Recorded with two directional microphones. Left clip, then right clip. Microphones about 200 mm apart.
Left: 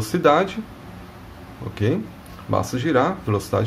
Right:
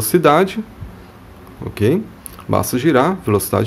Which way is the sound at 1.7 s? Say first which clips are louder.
Right 7 dB; 35° right (ahead or behind).